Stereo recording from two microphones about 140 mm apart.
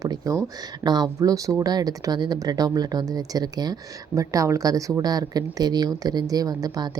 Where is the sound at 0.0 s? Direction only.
25° right (ahead or behind).